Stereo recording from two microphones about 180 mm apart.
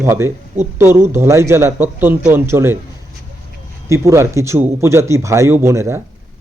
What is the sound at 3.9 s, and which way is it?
Speech, 15° right (ahead or behind).